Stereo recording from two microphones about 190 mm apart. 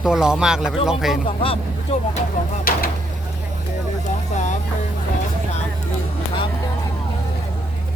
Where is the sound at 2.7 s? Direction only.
50° left (ahead or behind).